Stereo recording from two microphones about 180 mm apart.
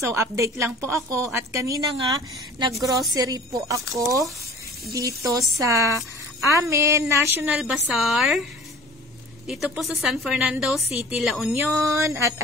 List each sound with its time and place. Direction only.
0.0 s a woman's voice: 15° right (ahead or behind); by 8.5 s centre (ahead or behind)
9.5 s a woman's voice: centre (ahead or behind)
11.9 s a woman's voice: 15° right (ahead or behind)